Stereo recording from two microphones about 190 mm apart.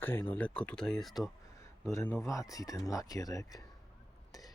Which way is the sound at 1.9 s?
15° left (ahead or behind).